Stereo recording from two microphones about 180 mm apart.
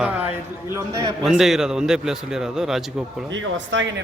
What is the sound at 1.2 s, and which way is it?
A man's voice, centre (ahead or behind).